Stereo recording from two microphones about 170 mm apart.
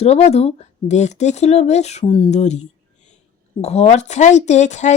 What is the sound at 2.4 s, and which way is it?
Speech, 45° left (ahead or behind).